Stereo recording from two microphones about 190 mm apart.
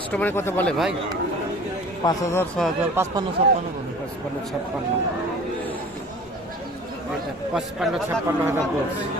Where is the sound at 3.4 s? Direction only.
30° right (ahead or behind).